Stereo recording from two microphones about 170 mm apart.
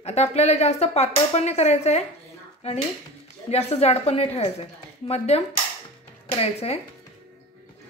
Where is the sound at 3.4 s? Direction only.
40° left (ahead or behind).